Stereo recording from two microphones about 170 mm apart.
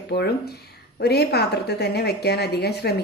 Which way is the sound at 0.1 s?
75° left (ahead or behind).